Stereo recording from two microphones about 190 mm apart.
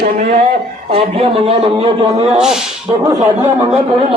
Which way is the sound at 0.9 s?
30° right (ahead or behind).